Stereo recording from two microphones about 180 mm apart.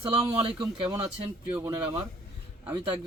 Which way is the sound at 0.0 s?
30° right (ahead or behind).